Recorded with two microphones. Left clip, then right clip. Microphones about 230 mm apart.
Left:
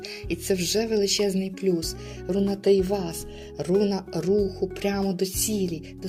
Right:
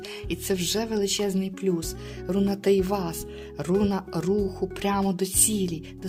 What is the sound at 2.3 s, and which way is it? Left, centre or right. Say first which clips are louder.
Speech: left 2 dB; right.